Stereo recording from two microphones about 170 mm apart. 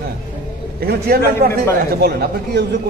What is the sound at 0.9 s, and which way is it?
Speech, 60° right (ahead or behind).